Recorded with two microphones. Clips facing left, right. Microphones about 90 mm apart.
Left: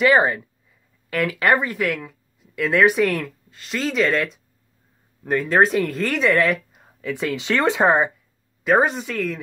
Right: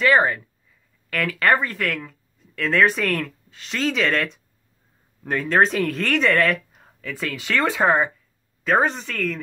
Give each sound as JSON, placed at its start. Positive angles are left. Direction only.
{"t": 0.0, "sound": "speech", "side_deg": 20}
{"t": 7.0, "sound": "speech", "side_deg": 20}